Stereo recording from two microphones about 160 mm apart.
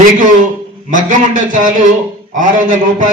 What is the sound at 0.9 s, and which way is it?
A man's voice, 55° right (ahead or behind).